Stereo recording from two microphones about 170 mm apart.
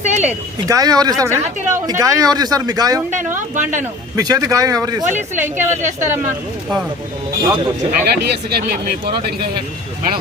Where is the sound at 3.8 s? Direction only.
20° right (ahead or behind).